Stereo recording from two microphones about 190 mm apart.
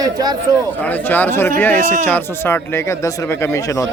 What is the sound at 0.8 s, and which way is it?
Speech, 10° left (ahead or behind).